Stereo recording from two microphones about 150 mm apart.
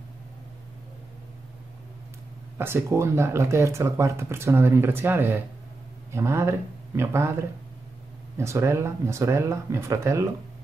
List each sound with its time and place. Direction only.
2.5 s speech: 15° right (ahead or behind)
8.4 s speech: 20° right (ahead or behind)